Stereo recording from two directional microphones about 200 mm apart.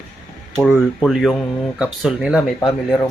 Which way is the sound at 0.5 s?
Centre (ahead or behind).